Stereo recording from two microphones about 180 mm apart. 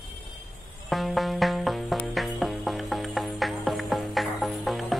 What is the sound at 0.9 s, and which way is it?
Music, centre (ahead or behind).